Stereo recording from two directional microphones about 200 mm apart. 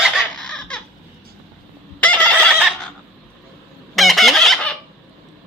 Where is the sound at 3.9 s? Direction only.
Centre (ahead or behind).